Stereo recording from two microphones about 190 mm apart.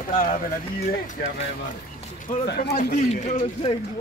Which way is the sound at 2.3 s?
55° left (ahead or behind).